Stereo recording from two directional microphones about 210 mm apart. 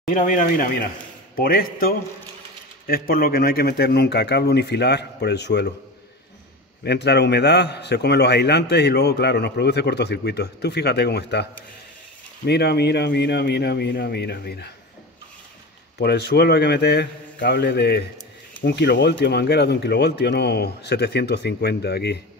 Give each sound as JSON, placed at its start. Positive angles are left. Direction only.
{"t": 0.0, "sound": "a man's voice", "side_deg": 40}
{"t": 6.8, "sound": "a man's voice", "side_deg": 55}
{"t": 12.4, "sound": "a man's voice", "side_deg": 50}
{"t": 16.0, "sound": "a man's voice", "side_deg": 50}